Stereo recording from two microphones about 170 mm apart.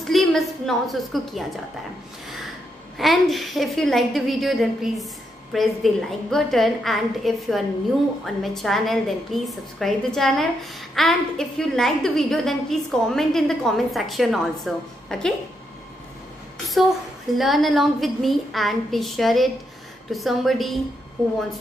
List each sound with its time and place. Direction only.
0.0 s a woman's voice: centre (ahead or behind)
3.0 s a woman's voice: centre (ahead or behind)
17.4 s a woman's voice: centre (ahead or behind)